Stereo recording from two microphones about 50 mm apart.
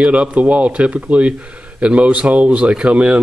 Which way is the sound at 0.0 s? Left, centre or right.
Right.